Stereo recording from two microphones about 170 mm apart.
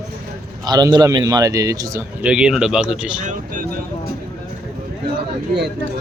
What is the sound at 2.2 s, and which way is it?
Speech, 5° right (ahead or behind).